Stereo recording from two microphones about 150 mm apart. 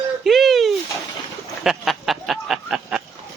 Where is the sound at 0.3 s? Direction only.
Centre (ahead or behind).